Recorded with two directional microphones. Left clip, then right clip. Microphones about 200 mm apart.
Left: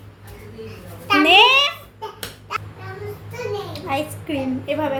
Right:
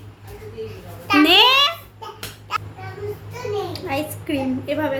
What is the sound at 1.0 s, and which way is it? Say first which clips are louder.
Speech: left 1 dB; 20° right (ahead or behind).